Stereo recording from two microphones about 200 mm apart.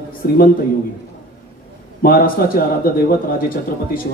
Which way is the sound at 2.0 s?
45° left (ahead or behind).